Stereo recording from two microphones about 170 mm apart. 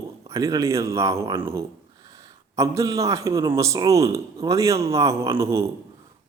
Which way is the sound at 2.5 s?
20° right (ahead or behind).